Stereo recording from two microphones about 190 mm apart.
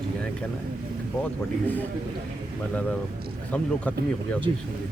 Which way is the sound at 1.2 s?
10° left (ahead or behind).